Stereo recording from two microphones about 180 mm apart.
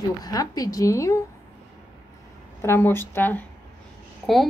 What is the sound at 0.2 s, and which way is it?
A woman's voice, 20° left (ahead or behind).